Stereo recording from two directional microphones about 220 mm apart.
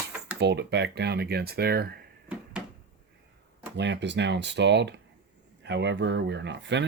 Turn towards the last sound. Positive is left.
turn(degrees=-55)  # may be behind; listen again after turning